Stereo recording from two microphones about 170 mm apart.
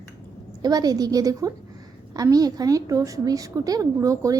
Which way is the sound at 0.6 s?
20° right (ahead or behind).